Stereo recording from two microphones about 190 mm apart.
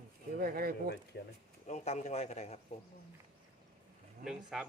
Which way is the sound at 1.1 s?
60° left (ahead or behind).